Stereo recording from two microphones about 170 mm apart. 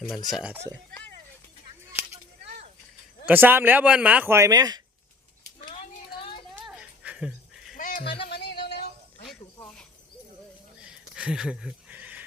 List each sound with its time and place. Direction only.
0.3 s speech: 5° right (ahead or behind)
3.2 s speech: 10° right (ahead or behind)
6.7 s dog: 5° right (ahead or behind)
7.8 s a sound: 50° left (ahead or behind)
8.3 s music: 70° left (ahead or behind)
10.8 s a sound: 5° right (ahead or behind)